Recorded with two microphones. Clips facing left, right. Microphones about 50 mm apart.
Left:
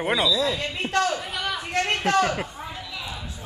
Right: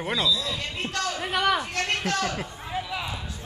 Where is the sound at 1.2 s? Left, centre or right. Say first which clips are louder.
Right 5 dB; right.